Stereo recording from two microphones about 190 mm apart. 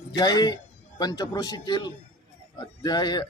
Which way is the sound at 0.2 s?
20° left (ahead or behind).